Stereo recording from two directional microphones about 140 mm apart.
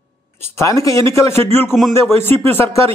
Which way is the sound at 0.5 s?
20° left (ahead or behind).